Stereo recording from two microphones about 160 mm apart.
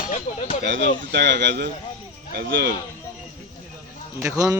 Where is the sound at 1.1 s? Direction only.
90° right.